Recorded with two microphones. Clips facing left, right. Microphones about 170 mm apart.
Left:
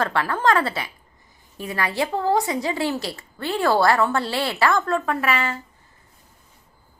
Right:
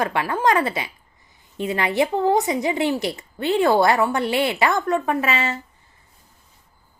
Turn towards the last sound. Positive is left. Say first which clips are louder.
# right 1 dB
turn(degrees=-20)  # may be behind; listen again after turning